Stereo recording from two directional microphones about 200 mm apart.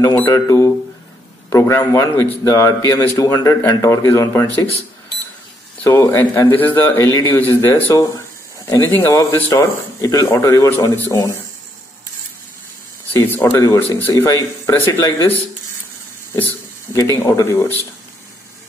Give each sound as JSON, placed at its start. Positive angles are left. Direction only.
{"t": 0.0, "sound": "a man's voice", "side_deg": 15}
{"t": 5.8, "sound": "a man's voice", "side_deg": 10}
{"t": 13.1, "sound": "a man's voice", "side_deg": 10}
{"t": 16.9, "sound": "a man's voice", "side_deg": 15}